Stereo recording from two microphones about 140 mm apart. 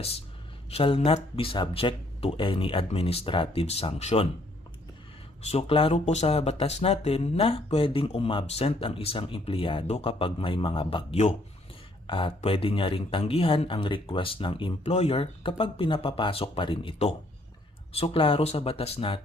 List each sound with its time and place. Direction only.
0.7 s speech: 45° left (ahead or behind)
5.4 s speech: 45° left (ahead or behind)
12.0 s speech: 35° left (ahead or behind)